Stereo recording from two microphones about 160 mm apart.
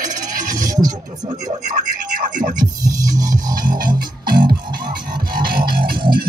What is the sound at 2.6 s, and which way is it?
Music, 20° right (ahead or behind).